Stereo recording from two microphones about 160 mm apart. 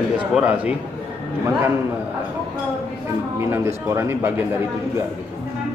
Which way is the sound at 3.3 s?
15° right (ahead or behind).